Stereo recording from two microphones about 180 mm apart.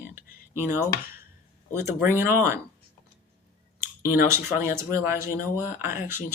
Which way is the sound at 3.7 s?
15° right (ahead or behind).